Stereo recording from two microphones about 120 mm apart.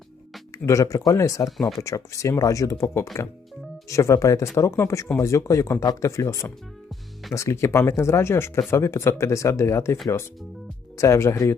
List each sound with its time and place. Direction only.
0.6 s speech: 25° left (ahead or behind)